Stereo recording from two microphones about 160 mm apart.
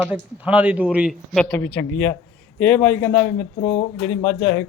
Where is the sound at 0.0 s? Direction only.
10° right (ahead or behind).